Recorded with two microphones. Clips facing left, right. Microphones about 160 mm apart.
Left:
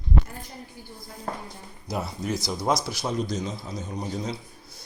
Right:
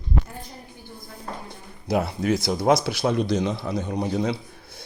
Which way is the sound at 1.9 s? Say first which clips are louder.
Right 7 dB; 65° right (ahead or behind).